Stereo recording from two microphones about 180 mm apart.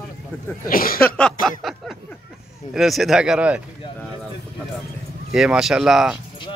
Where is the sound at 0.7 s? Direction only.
55° left (ahead or behind).